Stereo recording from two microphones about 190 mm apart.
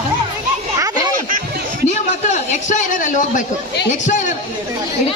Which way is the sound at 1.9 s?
40° left (ahead or behind).